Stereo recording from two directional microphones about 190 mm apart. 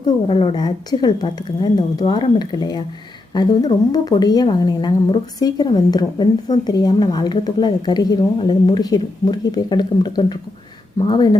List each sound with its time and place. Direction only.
0.3 s a woman's voice: 25° left (ahead or behind)